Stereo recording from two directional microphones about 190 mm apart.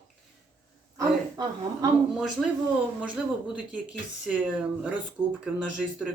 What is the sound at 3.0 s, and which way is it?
Speech, 5° right (ahead or behind).